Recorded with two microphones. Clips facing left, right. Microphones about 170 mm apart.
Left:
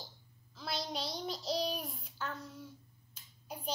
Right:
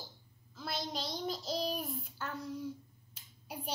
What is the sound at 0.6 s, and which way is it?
Child singing, centre (ahead or behind).